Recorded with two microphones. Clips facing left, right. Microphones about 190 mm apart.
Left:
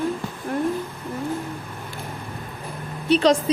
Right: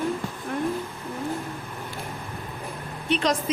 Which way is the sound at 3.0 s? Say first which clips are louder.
Left 7 dB; 35° left (ahead or behind).